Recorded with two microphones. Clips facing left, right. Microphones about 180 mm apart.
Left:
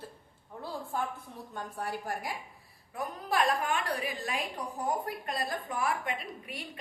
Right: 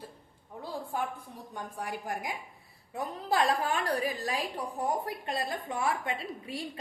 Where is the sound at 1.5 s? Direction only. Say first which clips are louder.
Left 1 dB; 15° right (ahead or behind); by 4.3 s 40° right (ahead or behind).